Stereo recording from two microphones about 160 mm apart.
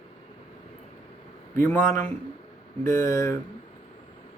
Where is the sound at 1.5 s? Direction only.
15° left (ahead or behind).